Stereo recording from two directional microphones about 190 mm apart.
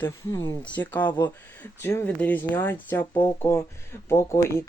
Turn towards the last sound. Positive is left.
turn(degrees=15)  # may be behind; listen again after turning